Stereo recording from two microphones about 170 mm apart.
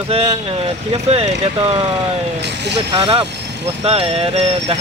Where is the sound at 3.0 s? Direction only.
30° right (ahead or behind).